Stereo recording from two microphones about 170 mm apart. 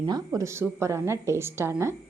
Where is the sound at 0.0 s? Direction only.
20° right (ahead or behind).